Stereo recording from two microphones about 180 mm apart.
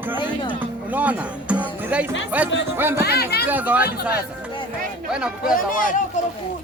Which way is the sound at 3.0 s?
65° left (ahead or behind).